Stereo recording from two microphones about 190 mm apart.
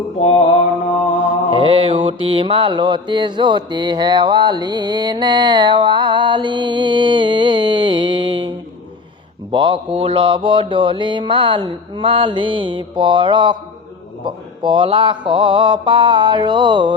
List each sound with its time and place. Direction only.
0.2 s mantra: 35° left (ahead or behind)
1.5 s mantra: 25° right (ahead or behind)